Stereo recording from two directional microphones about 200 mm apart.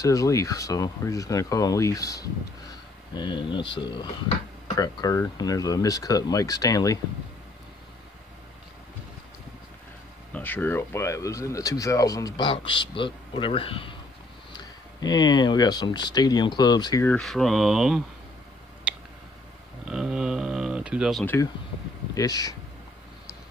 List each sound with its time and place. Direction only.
0.0 s speech: 15° left (ahead or behind)
10.3 s speech: 10° left (ahead or behind)
17.1 s speech: centre (ahead or behind)
18.9 s a sound: 5° right (ahead or behind)
22.1 s speech: 20° left (ahead or behind)